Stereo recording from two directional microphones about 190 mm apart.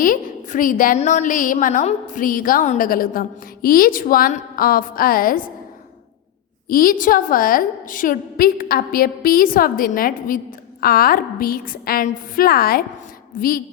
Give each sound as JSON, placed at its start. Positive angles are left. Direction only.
{"t": 0.0, "sound": "a woman's voice", "side_deg": 45}
{"t": 6.7, "sound": "a woman's voice", "side_deg": 50}